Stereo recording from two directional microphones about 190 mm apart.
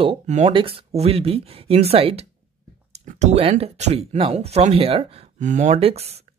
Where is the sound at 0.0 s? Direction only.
35° right (ahead or behind).